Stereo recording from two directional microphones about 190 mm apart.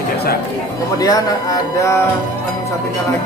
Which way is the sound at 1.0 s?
20° left (ahead or behind).